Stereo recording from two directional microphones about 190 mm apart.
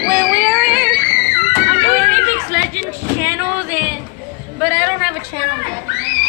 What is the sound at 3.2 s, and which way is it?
Speech, 10° right (ahead or behind).